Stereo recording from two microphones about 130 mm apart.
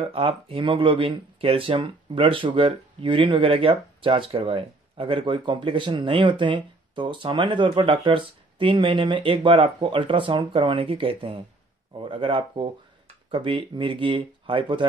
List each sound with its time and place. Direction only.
0.0 s speech: 45° right (ahead or behind)